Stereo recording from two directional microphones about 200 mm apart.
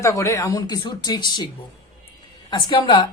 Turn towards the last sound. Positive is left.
turn(degrees=25)  # may be behind; listen again after turning